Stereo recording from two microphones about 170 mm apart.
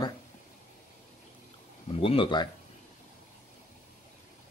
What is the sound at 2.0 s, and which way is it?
Speech, 30° left (ahead or behind).